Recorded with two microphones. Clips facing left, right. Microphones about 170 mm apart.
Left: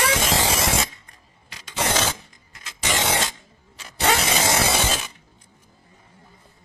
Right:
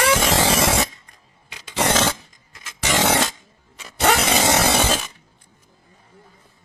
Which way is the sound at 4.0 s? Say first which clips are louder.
Right 3 dB; 65° right (ahead or behind).